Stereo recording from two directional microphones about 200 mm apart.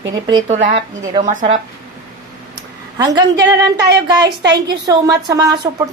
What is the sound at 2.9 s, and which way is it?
A woman's voice, 20° right (ahead or behind).